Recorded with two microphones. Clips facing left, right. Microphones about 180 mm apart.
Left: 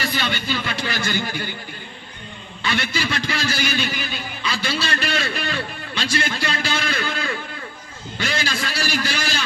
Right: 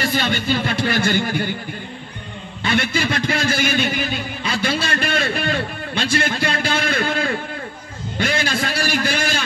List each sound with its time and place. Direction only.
0.0 s speech: 50° right (ahead or behind)
2.6 s a man's voice: 50° right (ahead or behind)